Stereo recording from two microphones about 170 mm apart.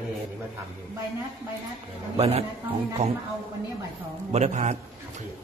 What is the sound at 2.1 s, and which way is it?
Speech, 40° right (ahead or behind).